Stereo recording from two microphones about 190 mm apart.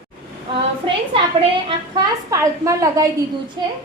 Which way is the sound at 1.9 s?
15° right (ahead or behind).